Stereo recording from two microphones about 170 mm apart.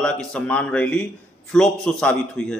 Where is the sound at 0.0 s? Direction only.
5° left (ahead or behind).